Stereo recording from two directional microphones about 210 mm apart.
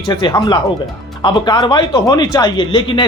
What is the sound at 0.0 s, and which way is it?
Speech, 20° left (ahead or behind).